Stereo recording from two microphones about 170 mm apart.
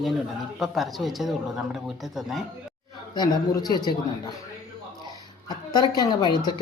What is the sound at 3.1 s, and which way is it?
Speech, 25° left (ahead or behind).